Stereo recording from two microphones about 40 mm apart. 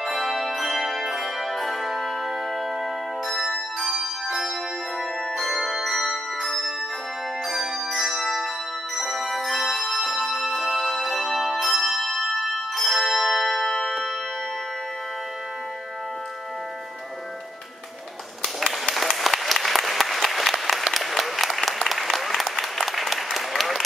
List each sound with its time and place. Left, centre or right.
0.0 s music: centre
3.3 s music: centre
5.4 s bell: centre
7.4 s music: centre
18.4 s applause: centre